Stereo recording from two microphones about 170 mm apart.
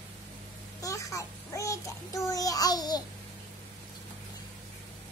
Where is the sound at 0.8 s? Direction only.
20° left (ahead or behind).